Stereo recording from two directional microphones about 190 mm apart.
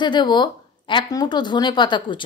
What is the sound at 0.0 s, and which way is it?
Speech, 25° left (ahead or behind).